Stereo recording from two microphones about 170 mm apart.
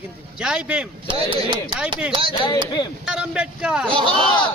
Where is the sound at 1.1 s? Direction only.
30° right (ahead or behind).